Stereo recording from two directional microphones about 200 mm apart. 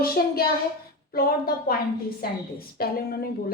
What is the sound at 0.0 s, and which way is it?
A woman's voice, 50° left (ahead or behind).